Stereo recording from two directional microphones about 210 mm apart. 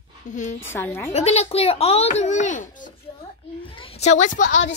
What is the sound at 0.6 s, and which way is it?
Speech, 10° left (ahead or behind).